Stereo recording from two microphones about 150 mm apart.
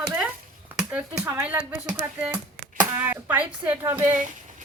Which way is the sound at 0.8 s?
5° right (ahead or behind).